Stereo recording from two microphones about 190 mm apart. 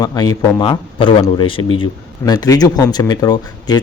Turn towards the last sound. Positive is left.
turn(degrees=20)  # may be behind; listen again after turning